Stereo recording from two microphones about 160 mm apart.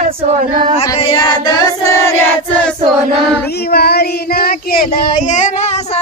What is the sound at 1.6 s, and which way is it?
Choir, 20° left (ahead or behind).